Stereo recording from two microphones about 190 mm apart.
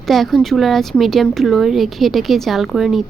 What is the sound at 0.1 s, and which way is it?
Speech, centre (ahead or behind).